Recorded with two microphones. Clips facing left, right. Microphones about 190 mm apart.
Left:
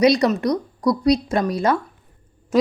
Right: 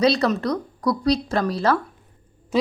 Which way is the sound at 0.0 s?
15° left (ahead or behind).